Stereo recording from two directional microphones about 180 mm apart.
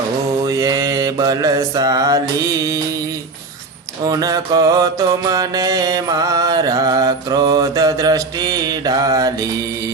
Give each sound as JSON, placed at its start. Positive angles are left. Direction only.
{"t": 0.4, "sound": "mantra", "side_deg": -20}
{"t": 4.0, "sound": "mantra", "side_deg": -20}